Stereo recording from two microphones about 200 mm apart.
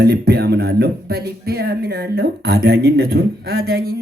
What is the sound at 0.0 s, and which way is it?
Speech, 50° right (ahead or behind).